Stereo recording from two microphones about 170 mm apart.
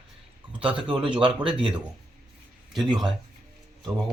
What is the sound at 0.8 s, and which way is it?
Speech, 30° right (ahead or behind).